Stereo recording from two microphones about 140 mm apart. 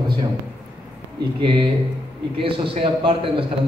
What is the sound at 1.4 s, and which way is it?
A man's voice, 35° right (ahead or behind).